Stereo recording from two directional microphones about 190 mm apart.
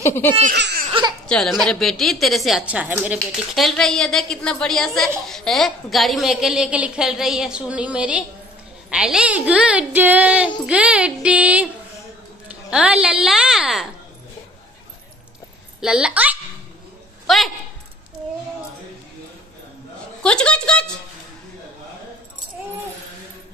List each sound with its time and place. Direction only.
0.0 s laughter: 10° left (ahead or behind)
0.6 s laughter: 60° right (ahead or behind)
1.2 s a woman's voice: centre (ahead or behind)
15.8 s speech: 5° right (ahead or behind)
20.2 s a woman's voice: 5° left (ahead or behind)